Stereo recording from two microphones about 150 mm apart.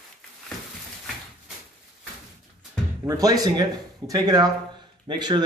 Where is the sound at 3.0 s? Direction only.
25° right (ahead or behind).